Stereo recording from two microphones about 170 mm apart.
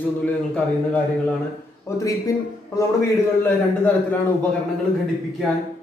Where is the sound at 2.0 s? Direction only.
20° left (ahead or behind).